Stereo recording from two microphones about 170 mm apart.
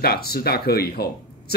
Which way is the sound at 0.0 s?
65° left (ahead or behind).